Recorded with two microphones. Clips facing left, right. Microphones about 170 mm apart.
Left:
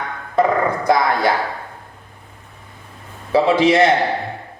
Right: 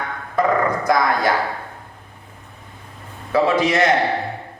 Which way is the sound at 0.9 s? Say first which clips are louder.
Left 2 dB; 25° left (ahead or behind).